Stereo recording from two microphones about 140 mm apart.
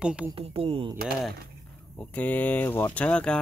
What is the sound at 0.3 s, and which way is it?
Speech, 40° right (ahead or behind).